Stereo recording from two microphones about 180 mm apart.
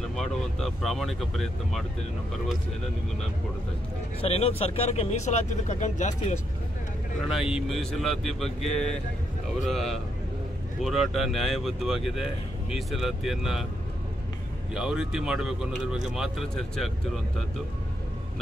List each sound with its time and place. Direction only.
0.1 s speech: centre (ahead or behind)
4.2 s speech: 35° left (ahead or behind)
7.2 s speech: 5° right (ahead or behind)
14.7 s speech: 5° right (ahead or behind)